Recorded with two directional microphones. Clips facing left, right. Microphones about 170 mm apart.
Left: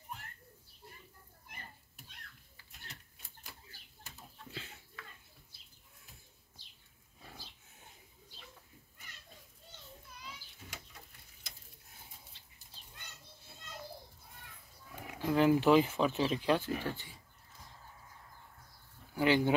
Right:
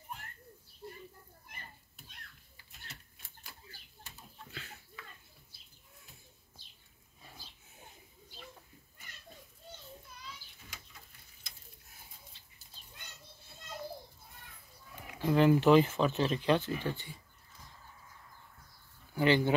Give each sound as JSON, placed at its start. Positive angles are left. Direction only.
{"t": 4.5, "sound": "a sound", "side_deg": 25}
{"t": 15.2, "sound": "speech", "side_deg": 5}
{"t": 19.1, "sound": "speech", "side_deg": 10}